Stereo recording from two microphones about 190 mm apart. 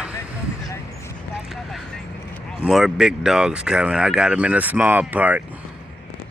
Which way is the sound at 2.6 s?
Centre (ahead or behind).